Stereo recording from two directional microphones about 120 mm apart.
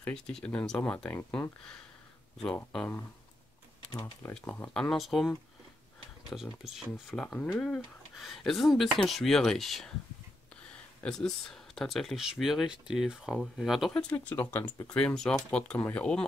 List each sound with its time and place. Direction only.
0.0 s speech: 5° left (ahead or behind)
2.4 s speech: 5° left (ahead or behind)
4.3 s speech: 10° left (ahead or behind)
6.3 s speech: 5° right (ahead or behind)
14.1 s speech: 15° left (ahead or behind)